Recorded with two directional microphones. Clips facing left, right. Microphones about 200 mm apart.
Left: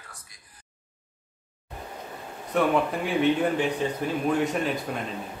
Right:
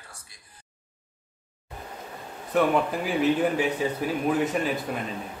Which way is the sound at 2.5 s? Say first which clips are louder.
Right 1 dB; centre (ahead or behind).